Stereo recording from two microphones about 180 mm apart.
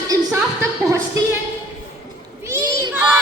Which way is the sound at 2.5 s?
20° right (ahead or behind).